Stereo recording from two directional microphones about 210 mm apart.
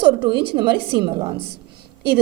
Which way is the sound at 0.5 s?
20° right (ahead or behind).